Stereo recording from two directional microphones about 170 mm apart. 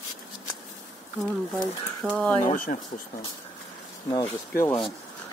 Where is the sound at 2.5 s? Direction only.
50° left (ahead or behind).